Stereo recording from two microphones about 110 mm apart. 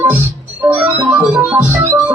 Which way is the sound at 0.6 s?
15° right (ahead or behind).